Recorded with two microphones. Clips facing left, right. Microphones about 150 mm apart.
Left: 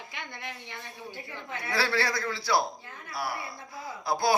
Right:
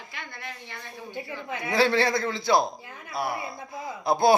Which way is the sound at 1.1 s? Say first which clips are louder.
Right 7 dB; 15° right (ahead or behind).